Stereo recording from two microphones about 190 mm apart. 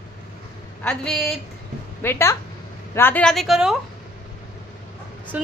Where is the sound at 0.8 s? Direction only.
5° left (ahead or behind).